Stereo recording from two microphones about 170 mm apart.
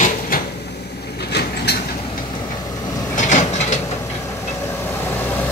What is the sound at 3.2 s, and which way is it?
Mechanisms, 45° left (ahead or behind).